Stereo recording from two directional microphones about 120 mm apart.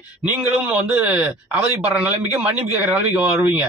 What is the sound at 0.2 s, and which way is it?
A man's voice, 10° right (ahead or behind).